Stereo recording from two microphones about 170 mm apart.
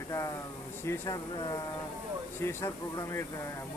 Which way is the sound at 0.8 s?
20° left (ahead or behind).